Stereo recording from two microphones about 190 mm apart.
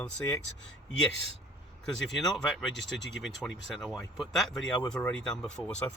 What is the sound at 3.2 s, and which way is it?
Speech, centre (ahead or behind).